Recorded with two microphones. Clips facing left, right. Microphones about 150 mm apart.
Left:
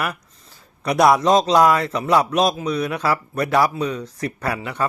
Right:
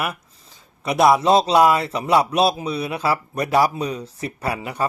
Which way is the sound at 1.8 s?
30° right (ahead or behind).